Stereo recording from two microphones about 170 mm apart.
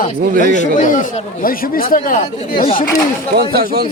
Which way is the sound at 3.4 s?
65° right (ahead or behind).